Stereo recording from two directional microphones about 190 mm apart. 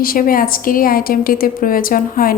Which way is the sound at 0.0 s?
50° left (ahead or behind).